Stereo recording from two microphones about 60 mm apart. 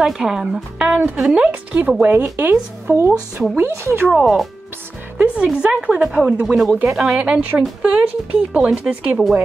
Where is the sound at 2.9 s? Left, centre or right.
Right.